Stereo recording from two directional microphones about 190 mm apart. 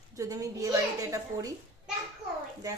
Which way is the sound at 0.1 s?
15° right (ahead or behind).